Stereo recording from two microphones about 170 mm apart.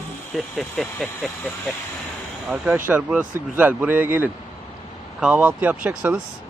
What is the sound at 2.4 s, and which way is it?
Speech, 10° right (ahead or behind).